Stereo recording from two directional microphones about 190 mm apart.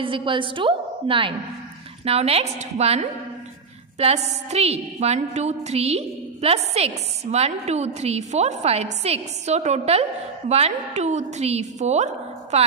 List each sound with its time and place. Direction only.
0.0 s a woman's voice: 25° right (ahead or behind)